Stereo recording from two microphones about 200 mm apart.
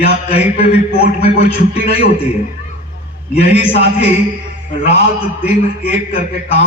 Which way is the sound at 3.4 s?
30° left (ahead or behind).